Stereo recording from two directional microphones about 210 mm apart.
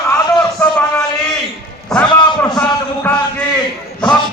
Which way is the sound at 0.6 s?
5° left (ahead or behind).